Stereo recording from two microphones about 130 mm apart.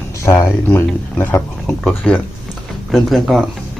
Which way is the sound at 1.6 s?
5° left (ahead or behind).